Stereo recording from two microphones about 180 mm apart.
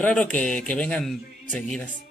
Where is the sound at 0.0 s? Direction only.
5° left (ahead or behind).